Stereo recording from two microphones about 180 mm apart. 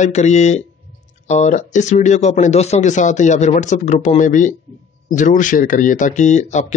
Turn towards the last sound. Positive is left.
turn(degrees=40)  # may be behind; listen again after turning